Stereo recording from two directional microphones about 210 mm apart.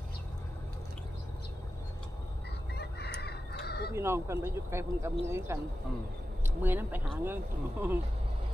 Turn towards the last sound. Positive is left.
turn(degrees=-10)  # may be behind; listen again after turning